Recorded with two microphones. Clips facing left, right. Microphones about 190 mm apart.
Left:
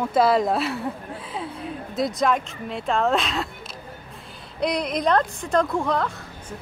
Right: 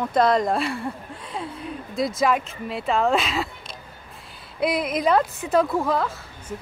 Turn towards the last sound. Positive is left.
turn(degrees=-5)  # may be behind; listen again after turning